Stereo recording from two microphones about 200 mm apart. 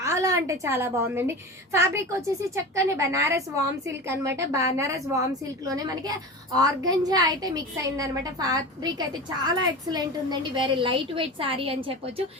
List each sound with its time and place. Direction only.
0.0 s a woman's voice: 15° right (ahead or behind)